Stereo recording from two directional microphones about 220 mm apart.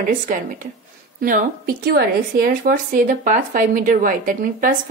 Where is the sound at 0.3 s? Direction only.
40° right (ahead or behind).